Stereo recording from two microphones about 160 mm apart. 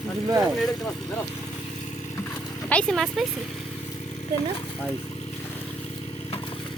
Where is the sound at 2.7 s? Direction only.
5° left (ahead or behind).